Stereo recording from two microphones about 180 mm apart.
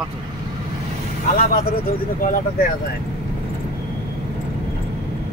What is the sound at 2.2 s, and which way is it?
Speech, 50° left (ahead or behind).